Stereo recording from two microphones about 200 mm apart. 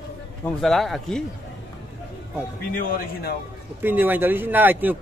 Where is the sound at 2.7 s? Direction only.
45° left (ahead or behind).